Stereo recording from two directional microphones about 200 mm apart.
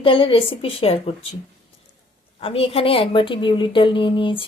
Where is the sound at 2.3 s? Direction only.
30° left (ahead or behind).